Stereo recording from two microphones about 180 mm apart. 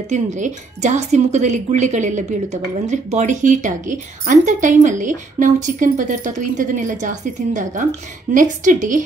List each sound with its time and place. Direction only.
0.1 s speech: 40° right (ahead or behind)